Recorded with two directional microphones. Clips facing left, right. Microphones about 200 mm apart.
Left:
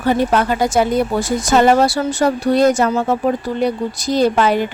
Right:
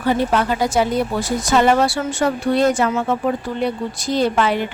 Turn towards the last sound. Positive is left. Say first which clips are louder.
# left 3 dB
turn(degrees=40)  # may be behind; listen again after turning